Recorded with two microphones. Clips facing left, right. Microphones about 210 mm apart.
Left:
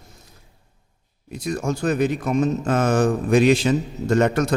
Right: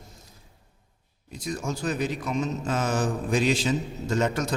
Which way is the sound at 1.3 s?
65° left (ahead or behind).